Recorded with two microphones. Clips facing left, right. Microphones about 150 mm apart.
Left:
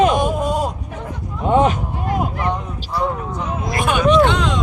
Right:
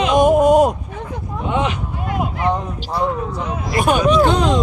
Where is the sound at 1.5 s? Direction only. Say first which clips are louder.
Left 6 dB; 45° left (ahead or behind).